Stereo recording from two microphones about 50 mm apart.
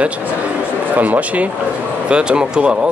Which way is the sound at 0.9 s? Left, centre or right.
Right.